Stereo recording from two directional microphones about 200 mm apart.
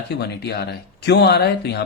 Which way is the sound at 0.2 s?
55° left (ahead or behind).